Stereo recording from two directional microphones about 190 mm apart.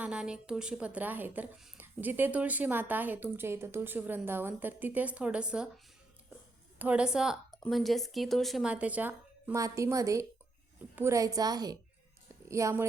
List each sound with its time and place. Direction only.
0.0 s a woman's voice: 5° right (ahead or behind)
6.7 s a woman's voice: 5° right (ahead or behind)